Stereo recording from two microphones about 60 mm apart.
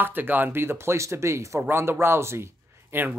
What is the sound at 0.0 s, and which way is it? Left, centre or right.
Speech, right.